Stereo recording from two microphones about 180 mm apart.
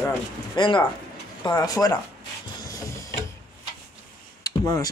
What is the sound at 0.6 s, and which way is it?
Speech, 25° left (ahead or behind).